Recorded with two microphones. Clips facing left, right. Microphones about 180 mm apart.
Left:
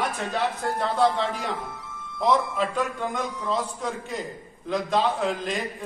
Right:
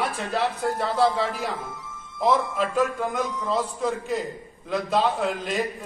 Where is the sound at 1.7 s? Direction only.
60° left (ahead or behind).